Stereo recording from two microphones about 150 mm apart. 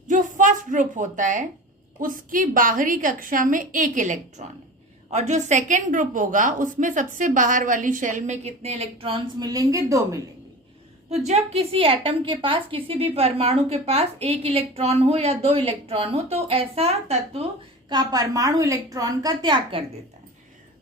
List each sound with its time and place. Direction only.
0.1 s a sound: 60° right (ahead or behind)
2.0 s a woman's voice: 65° right (ahead or behind); by 10.2 s 20° right (ahead or behind)
11.3 s a woman's voice: 45° right (ahead or behind)
17.8 s a woman's voice: 25° right (ahead or behind)